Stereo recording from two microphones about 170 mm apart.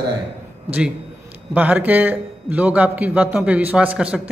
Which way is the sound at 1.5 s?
10° right (ahead or behind).